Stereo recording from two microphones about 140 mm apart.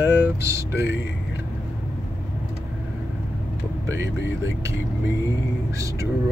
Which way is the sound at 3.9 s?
20° right (ahead or behind).